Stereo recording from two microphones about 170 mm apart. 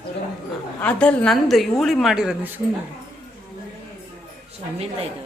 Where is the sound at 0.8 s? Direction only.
5° left (ahead or behind).